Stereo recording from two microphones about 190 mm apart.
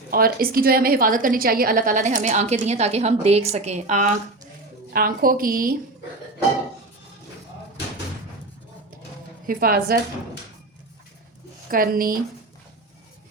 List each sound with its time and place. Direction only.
0.1 s a woman's voice: 50° right (ahead or behind)
4.9 s a woman's voice: 50° right (ahead or behind)
9.5 s a woman's voice: 50° right (ahead or behind)
11.7 s a woman's voice: 50° right (ahead or behind)